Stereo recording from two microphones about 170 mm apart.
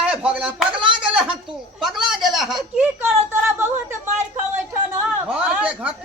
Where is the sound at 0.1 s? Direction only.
5° right (ahead or behind).